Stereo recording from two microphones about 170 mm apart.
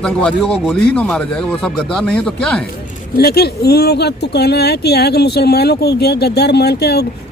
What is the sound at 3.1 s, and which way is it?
Speech, 65° left (ahead or behind).